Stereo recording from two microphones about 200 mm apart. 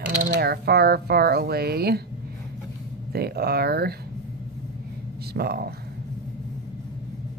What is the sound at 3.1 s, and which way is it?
Speech, 50° right (ahead or behind).